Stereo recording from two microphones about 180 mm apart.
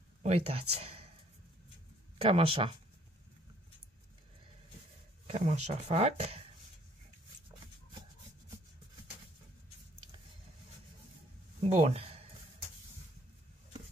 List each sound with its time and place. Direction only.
0.2 s speech: 35° right (ahead or behind)
2.1 s speech: 30° right (ahead or behind)
5.2 s speech: 35° right (ahead or behind)
11.7 s speech: 35° right (ahead or behind)